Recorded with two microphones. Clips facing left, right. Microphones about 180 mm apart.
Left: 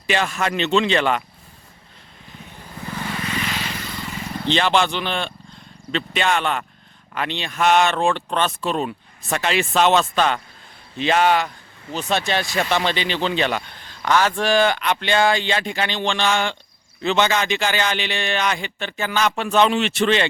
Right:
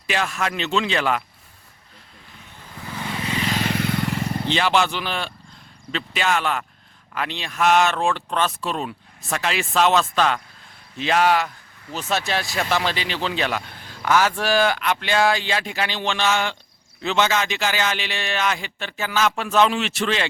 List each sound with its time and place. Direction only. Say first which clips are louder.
0.1 s speech: left 3 dB; centre (ahead or behind)
2.9 s vehicle: even; 15° right (ahead or behind)
3.5 s vehicle: right 7 dB; 50° right (ahead or behind)
4.4 s speech: left 2 dB; 5° right (ahead or behind)